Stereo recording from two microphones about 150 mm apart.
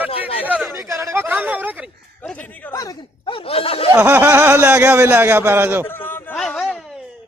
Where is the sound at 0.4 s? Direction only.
10° right (ahead or behind).